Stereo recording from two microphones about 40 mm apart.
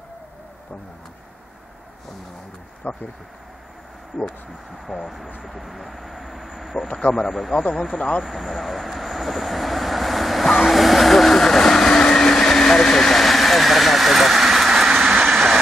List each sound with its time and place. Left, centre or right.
2.8 s speech: left
5.4 s speech: centre
7.1 s speech: centre
7.3 s speech: centre
8.2 s vehicle: centre
15.2 s train: centre